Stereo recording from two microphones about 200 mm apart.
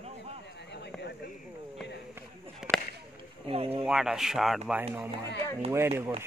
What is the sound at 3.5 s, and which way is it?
Speech, 30° right (ahead or behind).